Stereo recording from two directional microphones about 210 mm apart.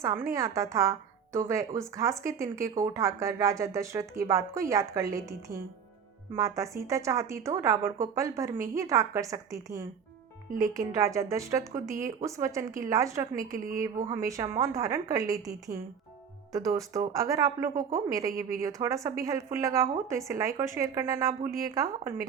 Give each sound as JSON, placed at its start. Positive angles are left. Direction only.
{"t": 0.0, "sound": "speech", "side_deg": -15}